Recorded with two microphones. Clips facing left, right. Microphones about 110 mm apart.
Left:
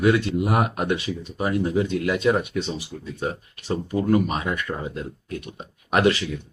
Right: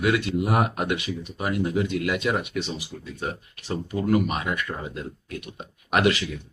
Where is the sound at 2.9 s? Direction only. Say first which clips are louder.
Left 3 dB; 20° left (ahead or behind).